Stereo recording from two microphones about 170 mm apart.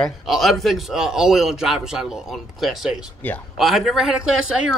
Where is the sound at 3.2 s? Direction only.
10° left (ahead or behind).